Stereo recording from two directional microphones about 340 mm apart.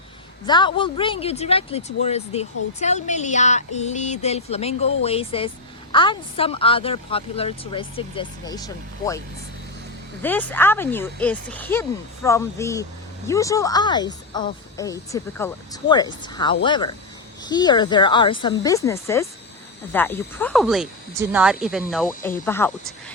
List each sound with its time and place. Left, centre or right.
0.4 s speech: centre
10.2 s speech: centre